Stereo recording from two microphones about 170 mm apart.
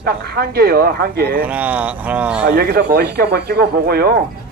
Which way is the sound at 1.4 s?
10° right (ahead or behind).